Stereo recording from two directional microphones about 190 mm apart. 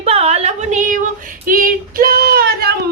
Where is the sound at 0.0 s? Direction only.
30° right (ahead or behind).